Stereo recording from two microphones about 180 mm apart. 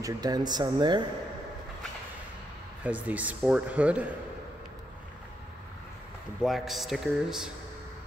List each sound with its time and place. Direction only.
0.0 s speech: 20° right (ahead or behind)
2.8 s a man's voice: 10° right (ahead or behind)
6.4 s a man's voice: centre (ahead or behind)